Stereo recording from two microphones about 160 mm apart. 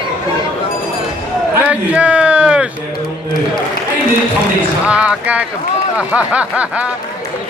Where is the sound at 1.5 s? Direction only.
10° right (ahead or behind).